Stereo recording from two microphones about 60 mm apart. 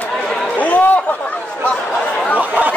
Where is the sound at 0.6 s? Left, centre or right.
Left.